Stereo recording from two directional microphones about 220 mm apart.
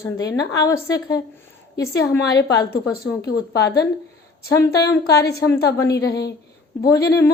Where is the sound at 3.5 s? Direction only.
50° left (ahead or behind).